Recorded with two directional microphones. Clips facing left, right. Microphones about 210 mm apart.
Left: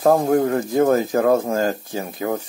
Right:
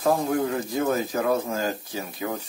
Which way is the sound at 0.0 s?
50° left (ahead or behind).